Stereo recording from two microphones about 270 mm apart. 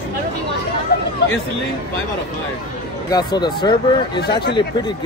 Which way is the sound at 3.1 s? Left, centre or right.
Centre.